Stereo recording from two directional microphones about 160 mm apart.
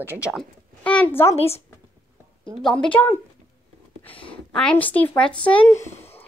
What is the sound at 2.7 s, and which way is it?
Speech, 10° left (ahead or behind).